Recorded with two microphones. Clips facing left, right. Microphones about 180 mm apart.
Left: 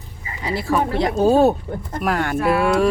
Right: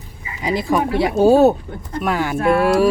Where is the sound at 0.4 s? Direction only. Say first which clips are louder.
Right 2 dB; 15° right (ahead or behind).